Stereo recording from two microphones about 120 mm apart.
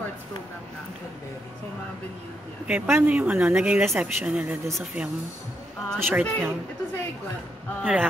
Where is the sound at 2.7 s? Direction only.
15° right (ahead or behind).